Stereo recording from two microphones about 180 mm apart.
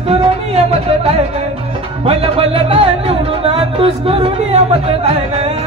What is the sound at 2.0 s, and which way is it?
Music, 30° right (ahead or behind).